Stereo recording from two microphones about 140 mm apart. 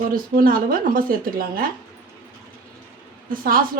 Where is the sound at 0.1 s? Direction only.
90° right.